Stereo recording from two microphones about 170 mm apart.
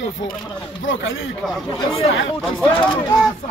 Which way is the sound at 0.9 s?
90° left.